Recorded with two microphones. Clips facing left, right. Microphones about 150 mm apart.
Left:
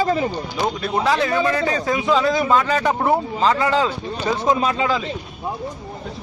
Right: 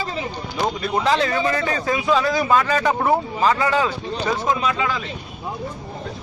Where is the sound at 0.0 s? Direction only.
45° left (ahead or behind).